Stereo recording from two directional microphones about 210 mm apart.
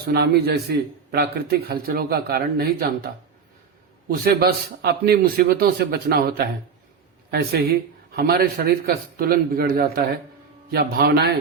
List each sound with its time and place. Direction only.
0.0 s a man's voice: 50° right (ahead or behind)
4.1 s a man's voice: 45° right (ahead or behind)